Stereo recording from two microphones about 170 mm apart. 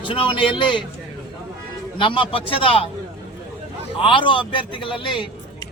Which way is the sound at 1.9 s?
30° left (ahead or behind).